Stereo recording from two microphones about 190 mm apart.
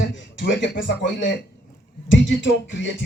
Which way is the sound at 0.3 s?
75° left (ahead or behind).